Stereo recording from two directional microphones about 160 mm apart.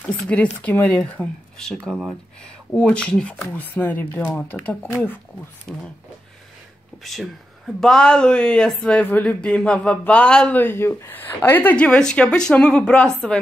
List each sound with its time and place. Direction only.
0.0 s speech: 5° left (ahead or behind)
7.0 s speech: centre (ahead or behind)